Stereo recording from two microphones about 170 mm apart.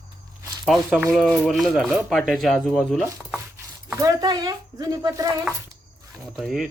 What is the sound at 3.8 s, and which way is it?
Speech, 20° right (ahead or behind).